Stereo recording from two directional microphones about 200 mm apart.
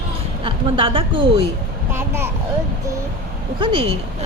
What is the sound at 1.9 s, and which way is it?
Speech, 10° right (ahead or behind).